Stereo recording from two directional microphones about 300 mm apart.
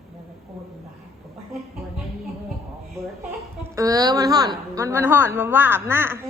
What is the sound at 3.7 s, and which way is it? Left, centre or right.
A woman's voice, centre.